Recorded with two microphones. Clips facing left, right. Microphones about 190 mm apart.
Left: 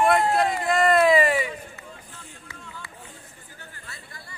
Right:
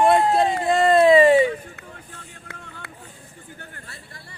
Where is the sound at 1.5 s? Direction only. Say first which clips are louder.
Right 5 dB; 60° right (ahead or behind).